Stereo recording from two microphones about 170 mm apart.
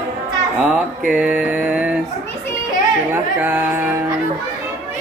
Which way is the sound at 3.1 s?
10° right (ahead or behind).